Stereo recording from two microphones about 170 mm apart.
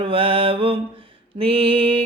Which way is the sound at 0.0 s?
35° right (ahead or behind).